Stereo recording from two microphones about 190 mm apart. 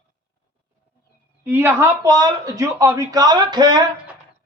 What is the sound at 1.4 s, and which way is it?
Speech, 10° right (ahead or behind).